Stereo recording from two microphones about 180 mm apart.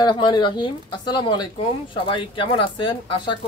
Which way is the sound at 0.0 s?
25° left (ahead or behind).